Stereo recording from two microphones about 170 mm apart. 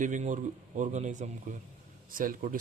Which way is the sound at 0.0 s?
50° right (ahead or behind).